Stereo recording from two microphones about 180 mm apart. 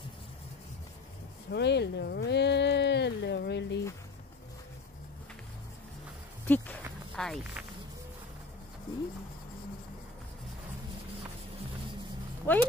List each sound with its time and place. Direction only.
1.5 s speech: 70° left (ahead or behind)
6.4 s a sound: 10° left (ahead or behind)
12.5 s speech: 10° left (ahead or behind)